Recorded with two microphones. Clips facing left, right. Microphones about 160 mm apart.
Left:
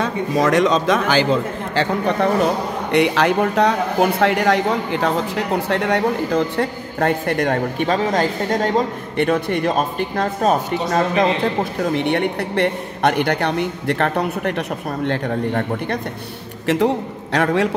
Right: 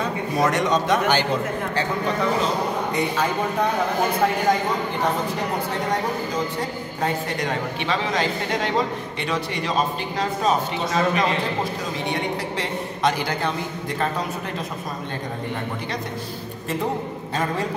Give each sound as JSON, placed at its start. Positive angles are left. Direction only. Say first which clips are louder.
{"t": 0.0, "sound": "a man's voice", "louder": "left 4 dB", "side_deg": 90}
{"t": 1.8, "sound": "a man's voice", "louder": "left 7 dB", "side_deg": 65}
{"t": 5.7, "sound": "a man's voice", "louder": "left 6 dB", "side_deg": 70}
{"t": 11.8, "sound": "a man's voice", "louder": "left 8 dB", "side_deg": 60}
{"t": 16.6, "sound": "a man's voice", "louder": "left 8 dB", "side_deg": 80}